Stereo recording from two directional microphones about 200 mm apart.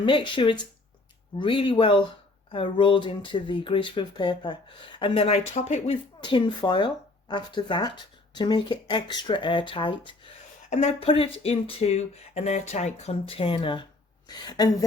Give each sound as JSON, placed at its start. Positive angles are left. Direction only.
{"t": 0.0, "sound": "speech", "side_deg": 25}